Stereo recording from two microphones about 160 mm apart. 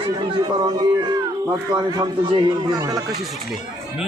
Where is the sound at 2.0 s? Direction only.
25° right (ahead or behind).